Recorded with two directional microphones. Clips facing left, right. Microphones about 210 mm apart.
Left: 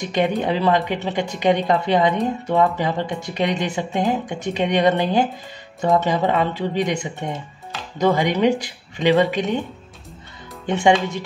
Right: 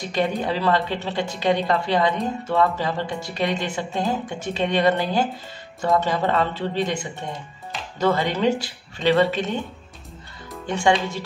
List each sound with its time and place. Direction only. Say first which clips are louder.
0.0 s speech: left 3 dB; 20° left (ahead or behind)
10.7 s speech: left 3 dB; 20° left (ahead or behind)